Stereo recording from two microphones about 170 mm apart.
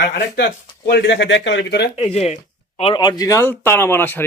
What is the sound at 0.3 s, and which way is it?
Speech, 75° left (ahead or behind).